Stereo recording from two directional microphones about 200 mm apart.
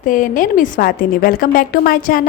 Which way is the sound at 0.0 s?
40° left (ahead or behind).